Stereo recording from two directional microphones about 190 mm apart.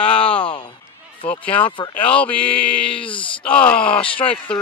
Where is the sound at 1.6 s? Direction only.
25° left (ahead or behind).